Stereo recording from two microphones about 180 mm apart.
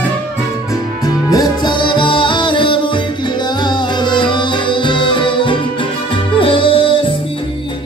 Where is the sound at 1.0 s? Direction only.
20° left (ahead or behind).